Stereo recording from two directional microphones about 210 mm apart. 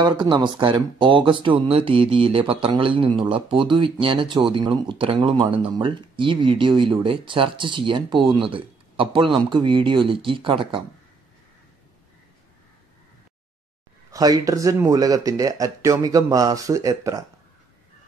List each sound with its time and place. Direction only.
0.0 s speech: 20° right (ahead or behind)
14.1 s speech: 15° right (ahead or behind)